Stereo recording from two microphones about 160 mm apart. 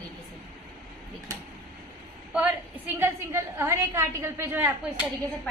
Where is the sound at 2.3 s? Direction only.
10° right (ahead or behind).